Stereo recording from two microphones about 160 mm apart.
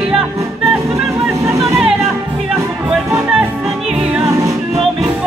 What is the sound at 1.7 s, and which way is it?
Music, 5° right (ahead or behind).